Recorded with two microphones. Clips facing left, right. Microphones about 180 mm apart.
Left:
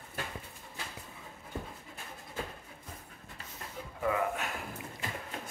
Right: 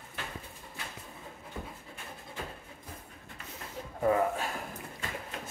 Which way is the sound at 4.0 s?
35° right (ahead or behind).